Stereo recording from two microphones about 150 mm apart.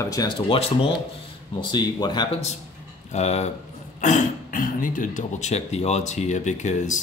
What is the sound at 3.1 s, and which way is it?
Speech, 45° left (ahead or behind).